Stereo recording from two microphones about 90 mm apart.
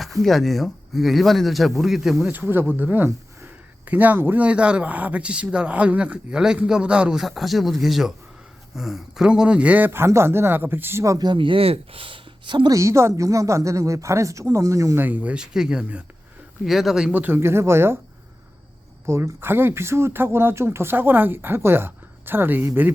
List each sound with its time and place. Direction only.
0.0 s speech: centre (ahead or behind)
2.3 s speech: 25° right (ahead or behind)
11.2 s speech: 60° right (ahead or behind)
12.7 s speech: 30° right (ahead or behind)
14.9 s speech: 20° right (ahead or behind)
16.6 s speech: 5° right (ahead or behind); by 17.9 s 30° right (ahead or behind)
19.0 s speech: 30° right (ahead or behind)